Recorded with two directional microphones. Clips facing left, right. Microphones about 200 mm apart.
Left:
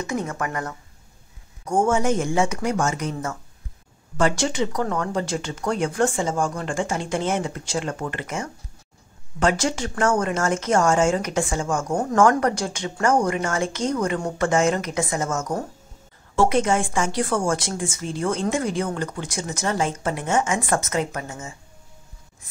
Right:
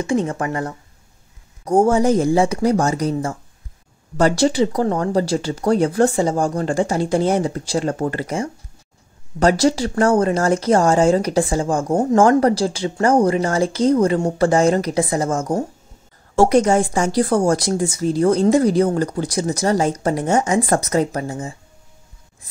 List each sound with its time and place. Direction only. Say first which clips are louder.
0.0 s speech: right 7 dB; 30° right (ahead or behind)